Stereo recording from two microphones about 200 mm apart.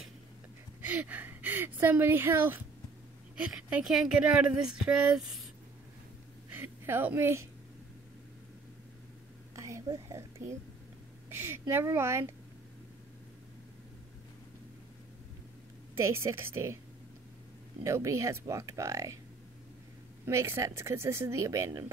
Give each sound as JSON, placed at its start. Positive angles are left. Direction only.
{"t": 0.7, "sound": "speech", "side_deg": -10}
{"t": 3.7, "sound": "speech", "side_deg": -5}
{"t": 6.5, "sound": "a woman's voice", "side_deg": -10}
{"t": 9.6, "sound": "a woman's voice", "side_deg": -15}
{"t": 16.1, "sound": "speech", "side_deg": -15}
{"t": 17.8, "sound": "speech", "side_deg": -15}
{"t": 20.2, "sound": "speech", "side_deg": -15}